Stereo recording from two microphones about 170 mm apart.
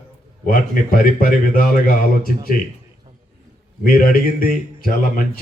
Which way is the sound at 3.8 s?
55° left (ahead or behind).